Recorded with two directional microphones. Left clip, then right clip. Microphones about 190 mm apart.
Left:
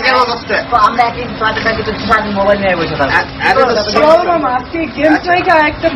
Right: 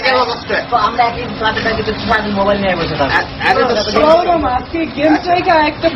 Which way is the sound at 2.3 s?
15° right (ahead or behind).